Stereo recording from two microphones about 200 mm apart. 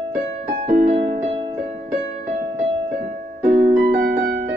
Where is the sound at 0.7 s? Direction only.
35° right (ahead or behind).